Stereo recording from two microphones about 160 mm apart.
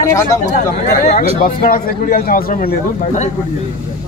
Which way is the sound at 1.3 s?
60° left (ahead or behind).